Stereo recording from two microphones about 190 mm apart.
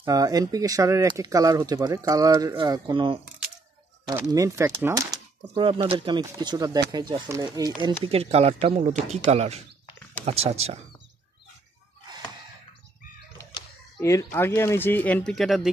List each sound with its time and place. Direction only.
0.0 s speech: 20° right (ahead or behind)
4.3 s speech: 15° right (ahead or behind); by 10.8 s 35° right (ahead or behind)
14.0 s speech: 15° left (ahead or behind)